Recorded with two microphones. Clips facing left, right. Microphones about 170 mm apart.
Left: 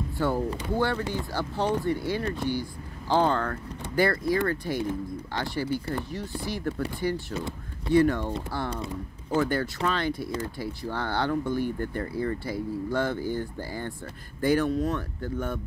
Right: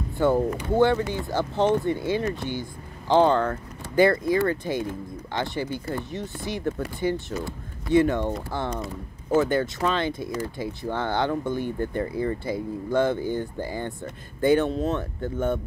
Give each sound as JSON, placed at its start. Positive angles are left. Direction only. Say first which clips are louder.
{"t": 0.2, "sound": "speech", "louder": "right 6 dB", "side_deg": -20}